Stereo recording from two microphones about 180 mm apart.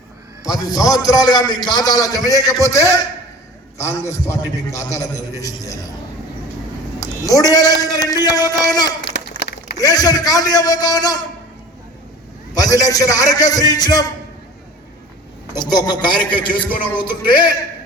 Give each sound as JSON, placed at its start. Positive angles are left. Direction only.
{"t": 0.4, "sound": "a man's voice", "side_deg": 20}
{"t": 7.3, "sound": "a man's voice", "side_deg": 20}
{"t": 9.0, "sound": "a sound", "side_deg": 70}
{"t": 9.7, "sound": "a man's voice", "side_deg": 20}
{"t": 12.5, "sound": "a man's voice", "side_deg": 20}
{"t": 15.5, "sound": "a man's voice", "side_deg": 20}